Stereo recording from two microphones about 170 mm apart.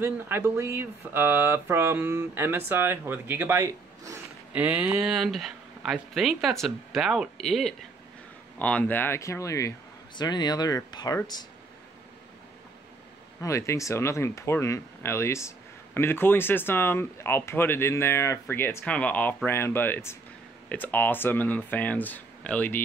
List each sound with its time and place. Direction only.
0.0 s speech: 15° right (ahead or behind); by 11.1 s 25° left (ahead or behind)
13.4 s speech: 15° left (ahead or behind)